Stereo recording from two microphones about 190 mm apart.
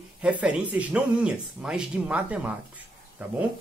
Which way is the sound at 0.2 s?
5° right (ahead or behind).